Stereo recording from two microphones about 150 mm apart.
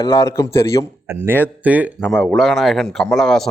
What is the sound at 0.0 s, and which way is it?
Speech, 25° left (ahead or behind).